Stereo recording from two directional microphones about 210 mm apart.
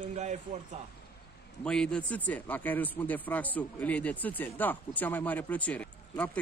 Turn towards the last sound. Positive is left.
turn(degrees=5)  # may be behind; listen again after turning